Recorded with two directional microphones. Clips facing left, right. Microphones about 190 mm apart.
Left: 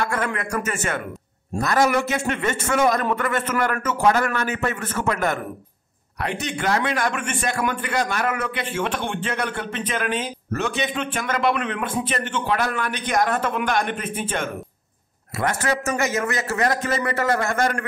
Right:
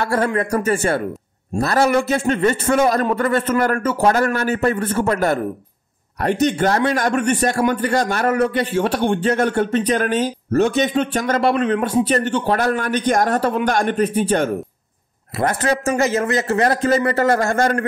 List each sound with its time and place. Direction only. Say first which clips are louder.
0.0 s a man's voice: right 6 dB; 35° right (ahead or behind)